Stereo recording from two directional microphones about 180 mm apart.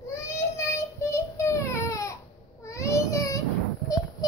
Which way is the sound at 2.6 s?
15° left (ahead or behind).